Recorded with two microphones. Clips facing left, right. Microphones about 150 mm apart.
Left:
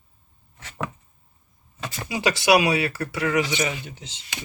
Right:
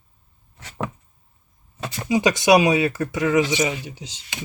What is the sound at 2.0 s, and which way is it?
Speech, 20° right (ahead or behind).